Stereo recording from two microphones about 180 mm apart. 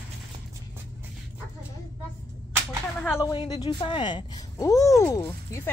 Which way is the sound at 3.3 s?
25° left (ahead or behind).